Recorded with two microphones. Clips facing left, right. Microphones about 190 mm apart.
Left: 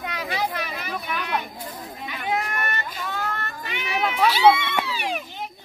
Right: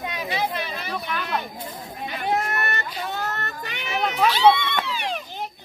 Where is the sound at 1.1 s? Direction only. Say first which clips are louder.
Left 1 dB; 15° left (ahead or behind).